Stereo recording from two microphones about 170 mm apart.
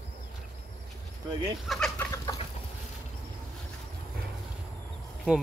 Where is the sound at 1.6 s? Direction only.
5° left (ahead or behind).